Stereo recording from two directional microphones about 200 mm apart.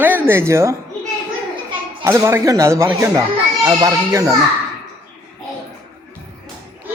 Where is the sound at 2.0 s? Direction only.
15° right (ahead or behind).